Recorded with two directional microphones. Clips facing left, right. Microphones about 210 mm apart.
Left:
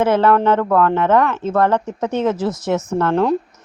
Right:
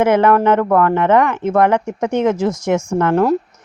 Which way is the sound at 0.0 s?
15° right (ahead or behind).